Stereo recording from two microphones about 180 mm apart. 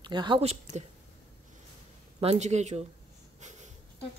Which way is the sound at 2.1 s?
35° right (ahead or behind).